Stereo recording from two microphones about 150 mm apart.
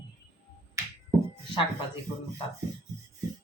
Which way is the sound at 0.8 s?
20° right (ahead or behind).